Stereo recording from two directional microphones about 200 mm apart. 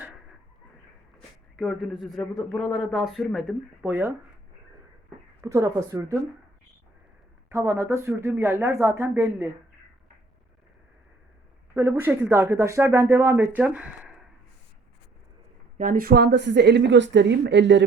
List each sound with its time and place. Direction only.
1.5 s speech: centre (ahead or behind)
5.4 s speech: 15° right (ahead or behind)
7.5 s speech: 10° right (ahead or behind)
11.7 s speech: 10° right (ahead or behind)
15.8 s speech: 45° right (ahead or behind); by 17.8 s 60° right (ahead or behind)